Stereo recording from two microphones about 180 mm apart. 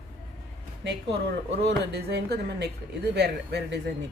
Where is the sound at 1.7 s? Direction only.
65° right (ahead or behind).